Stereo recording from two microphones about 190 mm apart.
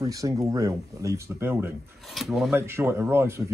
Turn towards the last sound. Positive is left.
turn(degrees=-15)  # may be behind; listen again after turning